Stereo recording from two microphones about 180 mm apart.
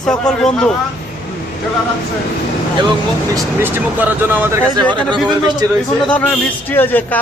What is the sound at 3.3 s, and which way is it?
Speech, 10° right (ahead or behind).